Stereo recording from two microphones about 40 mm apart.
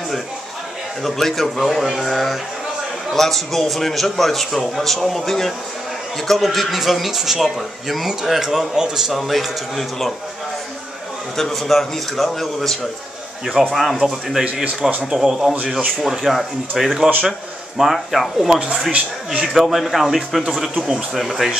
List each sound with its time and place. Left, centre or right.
1.0 s a man's voice: centre
9.3 s a man's voice: centre
11.3 s a man's voice: centre
13.6 s speech: centre
14.4 s speech: right
15.1 s a man's voice: centre
18.9 s speech: right
19.4 s a man's voice: centre